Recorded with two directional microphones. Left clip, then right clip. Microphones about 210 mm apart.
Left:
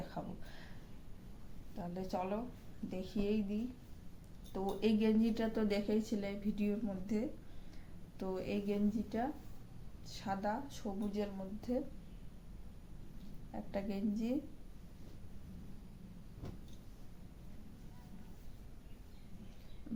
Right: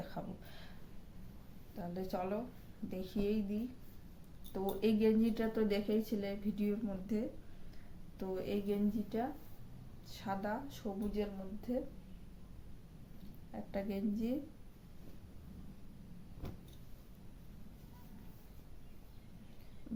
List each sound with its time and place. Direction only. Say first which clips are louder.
0.2 s a sound: left 1 dB; centre (ahead or behind)
1.7 s a woman's voice: even; 5° right (ahead or behind)
13.5 s a woman's voice: even; 5° left (ahead or behind)